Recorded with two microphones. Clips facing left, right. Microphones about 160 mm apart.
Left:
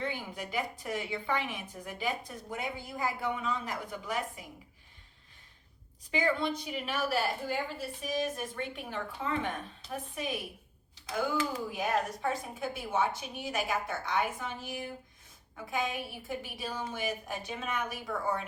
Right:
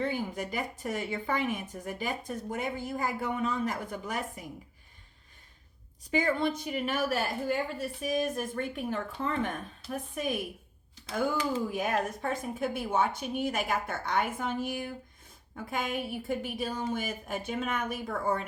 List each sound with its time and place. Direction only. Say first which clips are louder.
0.0 s a woman's voice: right 5 dB; 45° right (ahead or behind)
6.1 s a woman's voice: right 2 dB; 45° right (ahead or behind)
11.8 s a woman's voice: right 1 dB; 50° right (ahead or behind)